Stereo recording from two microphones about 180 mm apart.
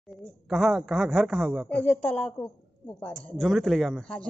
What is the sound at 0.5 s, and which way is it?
A man's voice, centre (ahead or behind).